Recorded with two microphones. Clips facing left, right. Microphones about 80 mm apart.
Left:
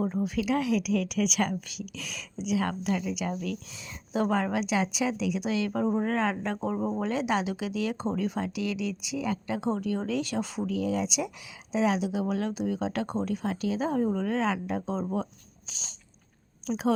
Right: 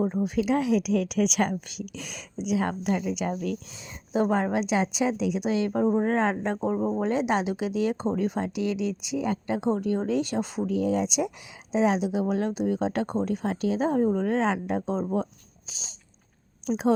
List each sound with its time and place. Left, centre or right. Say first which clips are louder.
0.0 s speech: right 3 dB; centre
6.7 s speech: right 3 dB; centre
7.0 s speech: right 2 dB; right